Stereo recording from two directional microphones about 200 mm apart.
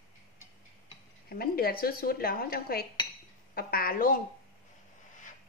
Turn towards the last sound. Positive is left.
turn(degrees=45)  # may be behind; listen again after turning